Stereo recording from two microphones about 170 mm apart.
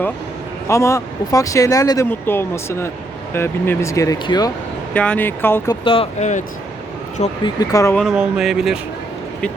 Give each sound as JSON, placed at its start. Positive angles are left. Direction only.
{"t": 0.7, "sound": "speech", "side_deg": 20}
{"t": 4.9, "sound": "speech", "side_deg": 10}
{"t": 5.8, "sound": "speech", "side_deg": 30}
{"t": 7.4, "sound": "speech", "side_deg": 20}
{"t": 7.9, "sound": "speech", "side_deg": -5}